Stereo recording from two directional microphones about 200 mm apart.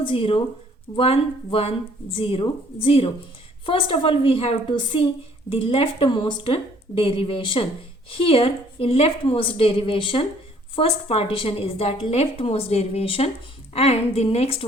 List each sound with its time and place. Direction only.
0.0 s a woman's voice: 25° left (ahead or behind)